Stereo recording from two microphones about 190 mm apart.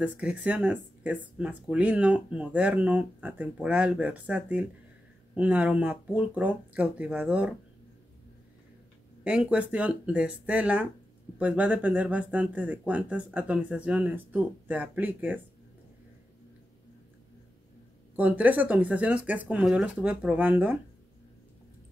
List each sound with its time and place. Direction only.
0.0 s speech: 5° right (ahead or behind)
9.2 s speech: 5° right (ahead or behind)
18.1 s speech: 10° right (ahead or behind)